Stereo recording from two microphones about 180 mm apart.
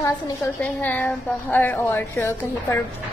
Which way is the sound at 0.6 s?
10° left (ahead or behind).